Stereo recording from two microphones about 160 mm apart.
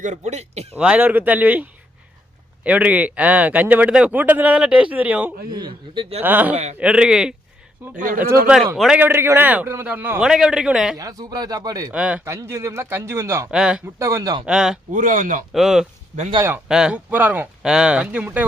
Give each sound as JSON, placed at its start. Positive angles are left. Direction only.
{"t": 0.0, "sound": "speech", "side_deg": -45}
{"t": 0.8, "sound": "speech", "side_deg": -10}
{"t": 5.5, "sound": "a man's voice", "side_deg": -25}
{"t": 6.2, "sound": "speech", "side_deg": -10}
{"t": 7.9, "sound": "speech", "side_deg": -60}
{"t": 8.7, "sound": "speech", "side_deg": -5}
{"t": 10.9, "sound": "speech", "side_deg": -20}
{"t": 11.9, "sound": "speech", "side_deg": -10}
{"t": 12.2, "sound": "speech", "side_deg": -20}
{"t": 13.5, "sound": "speech", "side_deg": -5}
{"t": 14.0, "sound": "speech", "side_deg": -20}
{"t": 14.4, "sound": "speech", "side_deg": -5}
{"t": 14.9, "sound": "speech", "side_deg": -55}
{"t": 15.5, "sound": "speech", "side_deg": 0}